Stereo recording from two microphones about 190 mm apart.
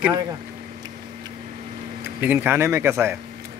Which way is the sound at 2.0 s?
10° right (ahead or behind).